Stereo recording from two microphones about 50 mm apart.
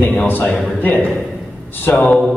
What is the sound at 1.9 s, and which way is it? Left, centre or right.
Speech, left.